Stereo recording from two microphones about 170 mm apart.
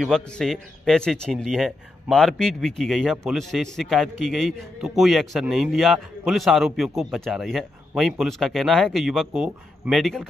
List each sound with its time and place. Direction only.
0.0 s a man's voice: centre (ahead or behind)